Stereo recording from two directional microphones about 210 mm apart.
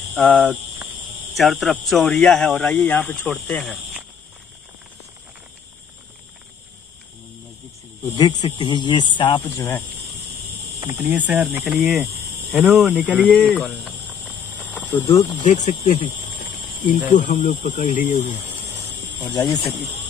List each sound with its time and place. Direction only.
0.1 s speech: 5° left (ahead or behind)
8.2 s speech: 20° left (ahead or behind)
10.8 s speech: 15° right (ahead or behind)
14.9 s speech: 20° left (ahead or behind)
15.4 s speech: 35° left (ahead or behind)
17.1 s speech: 35° left (ahead or behind)
19.1 s speech: 20° left (ahead or behind)